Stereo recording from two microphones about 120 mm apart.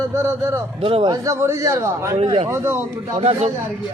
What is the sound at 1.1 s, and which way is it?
Speech, 25° right (ahead or behind).